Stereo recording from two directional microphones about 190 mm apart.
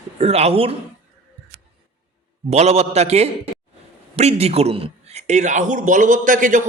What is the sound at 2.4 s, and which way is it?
A man's voice, 35° right (ahead or behind).